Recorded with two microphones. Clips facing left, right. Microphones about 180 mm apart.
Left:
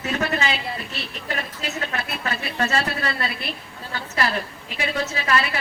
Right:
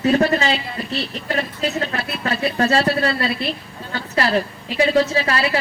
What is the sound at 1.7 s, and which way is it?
A woman's voice, 35° right (ahead or behind).